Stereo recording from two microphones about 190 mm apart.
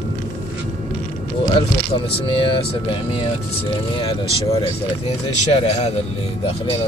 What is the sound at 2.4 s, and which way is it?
Speech, 25° left (ahead or behind).